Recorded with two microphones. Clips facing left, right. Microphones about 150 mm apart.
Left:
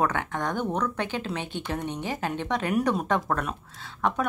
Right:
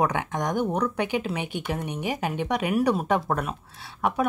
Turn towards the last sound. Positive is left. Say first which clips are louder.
# right 1 dB
turn(degrees=-10)  # may be behind; listen again after turning